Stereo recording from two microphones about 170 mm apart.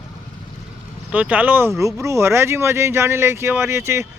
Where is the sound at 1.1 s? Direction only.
10° right (ahead or behind).